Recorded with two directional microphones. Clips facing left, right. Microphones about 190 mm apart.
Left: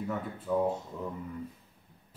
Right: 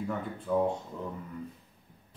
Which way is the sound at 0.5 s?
5° left (ahead or behind).